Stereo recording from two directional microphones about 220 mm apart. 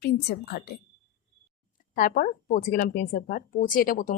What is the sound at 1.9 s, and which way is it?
Speech, 40° left (ahead or behind).